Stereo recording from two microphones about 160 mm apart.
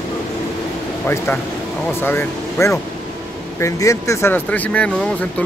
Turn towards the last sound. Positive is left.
turn(degrees=10)  # may be behind; listen again after turning